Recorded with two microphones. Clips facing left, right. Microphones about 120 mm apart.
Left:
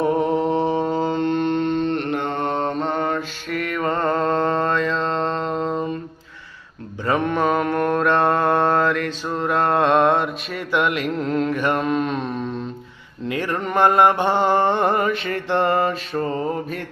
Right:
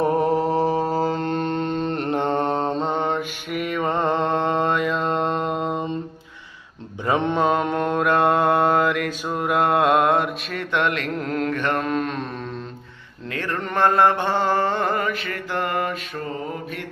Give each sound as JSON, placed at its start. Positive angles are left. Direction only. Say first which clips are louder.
{"t": 0.5, "sound": "mantra", "louder": "even", "side_deg": -40}
{"t": 7.0, "sound": "mantra", "louder": "even", "side_deg": -20}
{"t": 13.2, "sound": "mantra", "louder": "left 4 dB", "side_deg": 15}